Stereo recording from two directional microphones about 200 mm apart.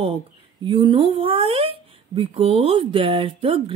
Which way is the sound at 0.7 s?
25° right (ahead or behind).